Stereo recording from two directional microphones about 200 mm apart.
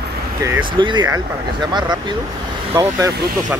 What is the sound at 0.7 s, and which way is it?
Speech, 25° right (ahead or behind).